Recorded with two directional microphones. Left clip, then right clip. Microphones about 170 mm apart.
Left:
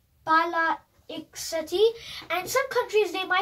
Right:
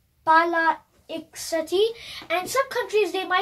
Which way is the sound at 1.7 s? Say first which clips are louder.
Left 3 dB; 35° right (ahead or behind).